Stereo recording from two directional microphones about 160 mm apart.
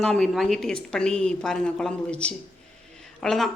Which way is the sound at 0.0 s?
Centre (ahead or behind).